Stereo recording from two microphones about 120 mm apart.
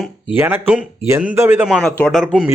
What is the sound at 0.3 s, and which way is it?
A man's voice, 20° right (ahead or behind).